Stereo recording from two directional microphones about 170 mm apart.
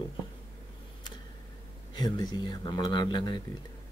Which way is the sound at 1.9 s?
25° left (ahead or behind).